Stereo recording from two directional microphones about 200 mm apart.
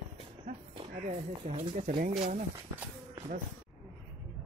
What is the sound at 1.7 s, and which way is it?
Speech, 35° right (ahead or behind).